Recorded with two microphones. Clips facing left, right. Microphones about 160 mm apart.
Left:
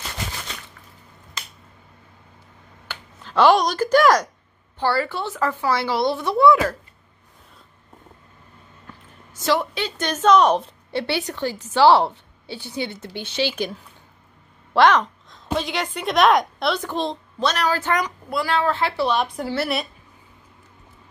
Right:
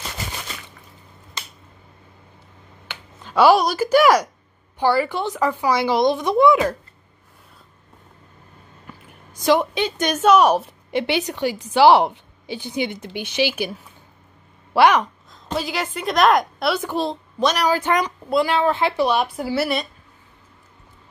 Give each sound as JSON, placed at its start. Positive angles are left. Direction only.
{"t": 2.9, "sound": "a woman's voice", "side_deg": -15}
{"t": 8.8, "sound": "a woman's voice", "side_deg": -15}